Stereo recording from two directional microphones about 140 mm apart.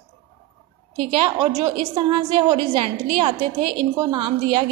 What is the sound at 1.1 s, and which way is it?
A woman's voice, 35° right (ahead or behind).